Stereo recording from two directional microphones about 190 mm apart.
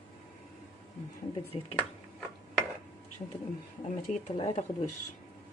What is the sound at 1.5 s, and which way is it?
Speech, 30° left (ahead or behind).